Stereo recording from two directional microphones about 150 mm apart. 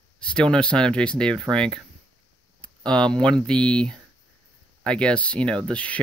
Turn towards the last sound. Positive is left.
turn(degrees=10)  # may be behind; listen again after turning